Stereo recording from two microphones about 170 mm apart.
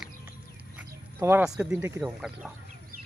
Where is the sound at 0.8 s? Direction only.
10° right (ahead or behind).